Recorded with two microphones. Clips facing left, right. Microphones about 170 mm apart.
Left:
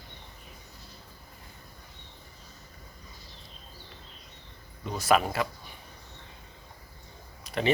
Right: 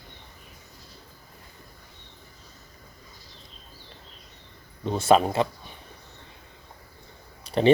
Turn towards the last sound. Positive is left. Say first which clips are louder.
# right 7 dB
turn(degrees=-30)  # may be behind; listen again after turning